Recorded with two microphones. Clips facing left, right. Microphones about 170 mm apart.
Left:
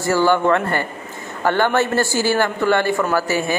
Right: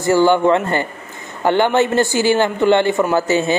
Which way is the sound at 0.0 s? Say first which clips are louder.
Right 3 dB; 20° right (ahead or behind).